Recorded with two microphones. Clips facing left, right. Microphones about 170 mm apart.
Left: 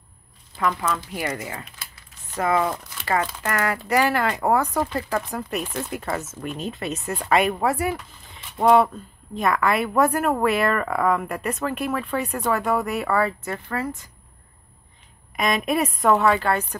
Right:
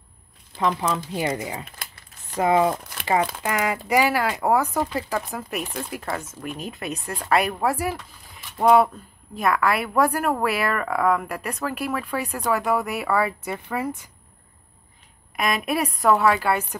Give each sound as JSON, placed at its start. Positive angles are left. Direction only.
{"t": 0.6, "sound": "speech", "side_deg": -25}
{"t": 15.3, "sound": "speech", "side_deg": 0}